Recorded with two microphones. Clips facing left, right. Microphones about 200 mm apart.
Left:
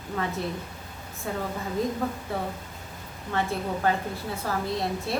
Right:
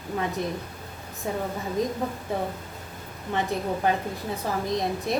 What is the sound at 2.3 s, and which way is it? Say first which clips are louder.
Child singing: right 2 dB; 15° right (ahead or behind).